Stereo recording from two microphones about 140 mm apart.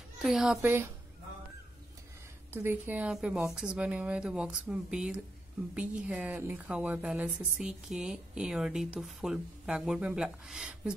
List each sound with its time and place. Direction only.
0.2 s speech: 5° right (ahead or behind)
2.5 s a woman's voice: 15° right (ahead or behind)